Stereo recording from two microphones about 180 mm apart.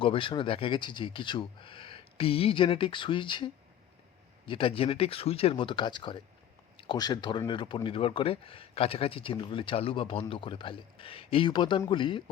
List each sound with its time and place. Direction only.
0.0 s speech: 30° left (ahead or behind)